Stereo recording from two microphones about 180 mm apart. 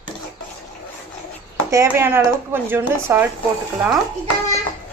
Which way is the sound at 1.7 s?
15° right (ahead or behind).